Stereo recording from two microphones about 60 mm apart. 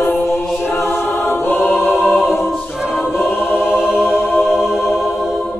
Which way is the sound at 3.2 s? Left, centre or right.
Left.